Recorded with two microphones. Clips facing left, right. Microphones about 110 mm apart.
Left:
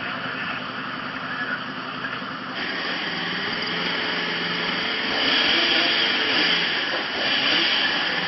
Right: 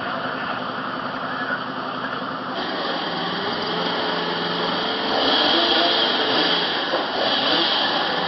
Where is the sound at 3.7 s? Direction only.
15° right (ahead or behind).